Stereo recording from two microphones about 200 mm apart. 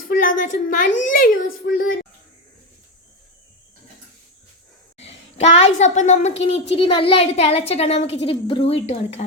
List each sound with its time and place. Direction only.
0.1 s a woman's voice: 45° left (ahead or behind)
4.9 s a woman's voice: 30° left (ahead or behind)